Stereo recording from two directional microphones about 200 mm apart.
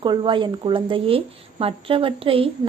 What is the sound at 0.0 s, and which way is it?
Speech, 25° right (ahead or behind).